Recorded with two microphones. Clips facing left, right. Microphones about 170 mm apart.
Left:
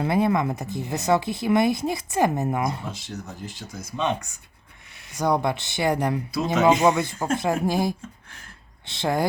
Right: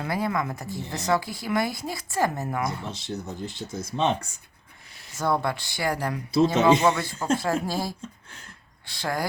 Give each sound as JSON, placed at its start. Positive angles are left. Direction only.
{"t": 0.0, "sound": "speech", "side_deg": 25}
{"t": 3.7, "sound": "speech", "side_deg": -25}
{"t": 5.1, "sound": "speech", "side_deg": 15}
{"t": 6.3, "sound": "speech", "side_deg": -25}
{"t": 6.7, "sound": "speech", "side_deg": 20}